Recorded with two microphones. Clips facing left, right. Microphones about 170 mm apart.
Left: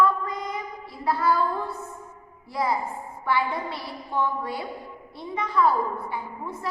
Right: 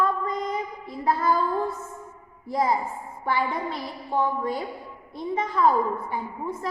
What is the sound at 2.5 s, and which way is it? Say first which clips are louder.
A woman's voice: right 2 dB; 45° right (ahead or behind).